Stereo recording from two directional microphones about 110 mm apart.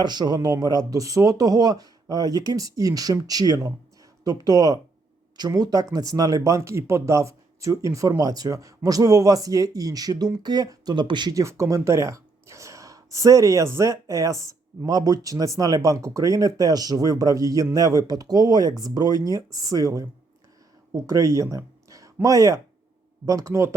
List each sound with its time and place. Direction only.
0.0 s speech: 40° right (ahead or behind)
11.3 s speech: 25° right (ahead or behind)